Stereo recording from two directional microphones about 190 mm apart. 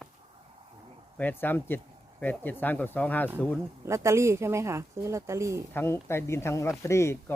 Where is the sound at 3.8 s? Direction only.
15° right (ahead or behind).